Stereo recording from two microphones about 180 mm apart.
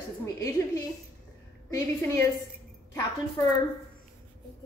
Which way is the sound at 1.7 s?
15° left (ahead or behind).